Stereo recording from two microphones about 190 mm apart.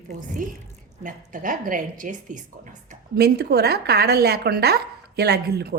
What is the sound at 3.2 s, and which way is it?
A woman's voice, 55° right (ahead or behind).